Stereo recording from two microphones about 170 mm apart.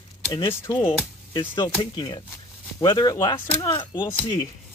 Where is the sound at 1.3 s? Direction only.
30° left (ahead or behind).